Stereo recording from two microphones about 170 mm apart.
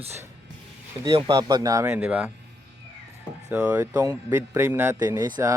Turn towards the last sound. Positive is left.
turn(degrees=-25)  # may be behind; listen again after turning